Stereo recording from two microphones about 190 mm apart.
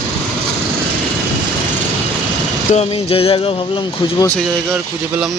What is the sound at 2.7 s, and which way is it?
Music, 35° left (ahead or behind).